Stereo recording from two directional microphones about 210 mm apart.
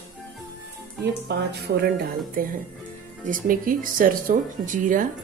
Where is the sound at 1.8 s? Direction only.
50° right (ahead or behind).